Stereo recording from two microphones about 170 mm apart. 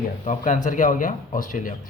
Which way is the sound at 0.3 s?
50° left (ahead or behind).